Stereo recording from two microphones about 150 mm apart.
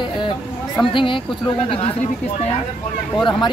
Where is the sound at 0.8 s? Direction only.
35° left (ahead or behind).